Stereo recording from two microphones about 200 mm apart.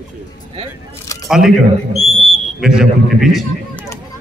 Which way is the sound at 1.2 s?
Centre (ahead or behind).